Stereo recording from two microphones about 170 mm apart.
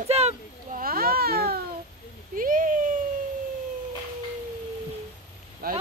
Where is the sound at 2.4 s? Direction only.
55° right (ahead or behind).